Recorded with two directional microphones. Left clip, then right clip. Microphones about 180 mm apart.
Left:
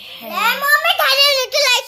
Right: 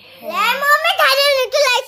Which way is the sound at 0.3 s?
45° right (ahead or behind).